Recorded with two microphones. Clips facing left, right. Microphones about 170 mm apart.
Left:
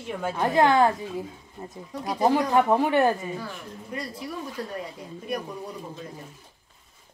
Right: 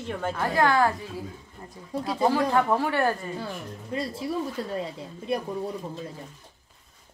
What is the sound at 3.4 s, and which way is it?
Speech, 25° right (ahead or behind).